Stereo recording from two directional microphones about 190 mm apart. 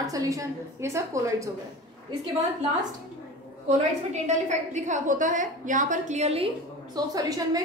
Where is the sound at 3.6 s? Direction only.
40° right (ahead or behind).